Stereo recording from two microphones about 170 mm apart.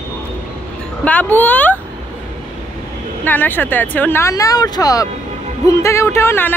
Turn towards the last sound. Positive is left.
turn(degrees=15)  # may be behind; listen again after turning